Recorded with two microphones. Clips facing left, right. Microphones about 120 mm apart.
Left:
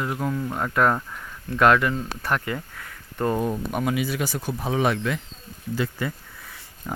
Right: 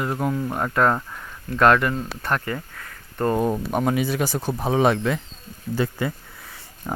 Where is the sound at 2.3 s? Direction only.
10° left (ahead or behind).